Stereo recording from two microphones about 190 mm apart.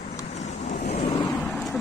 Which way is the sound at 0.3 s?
35° left (ahead or behind).